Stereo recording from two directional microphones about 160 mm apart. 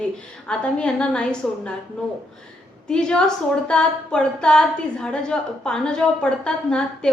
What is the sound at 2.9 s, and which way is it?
A woman's voice, 5° left (ahead or behind).